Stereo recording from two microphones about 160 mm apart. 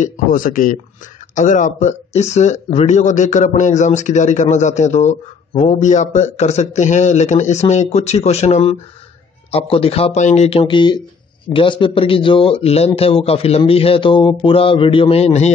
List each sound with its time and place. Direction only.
0.0 s speech: 60° left (ahead or behind); by 15.5 s 40° left (ahead or behind)